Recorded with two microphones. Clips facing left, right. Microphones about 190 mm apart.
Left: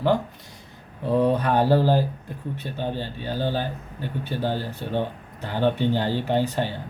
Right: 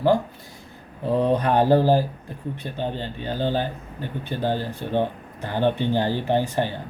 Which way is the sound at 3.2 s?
15° right (ahead or behind).